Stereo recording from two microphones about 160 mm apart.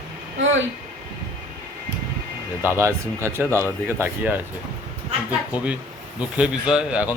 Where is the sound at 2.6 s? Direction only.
15° right (ahead or behind).